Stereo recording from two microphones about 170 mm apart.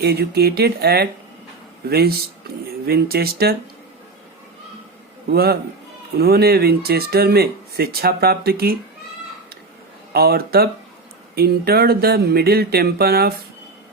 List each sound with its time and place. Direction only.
0.0 s speech: 70° right (ahead or behind)
5.3 s speech: 65° right (ahead or behind)
10.1 s speech: 65° right (ahead or behind)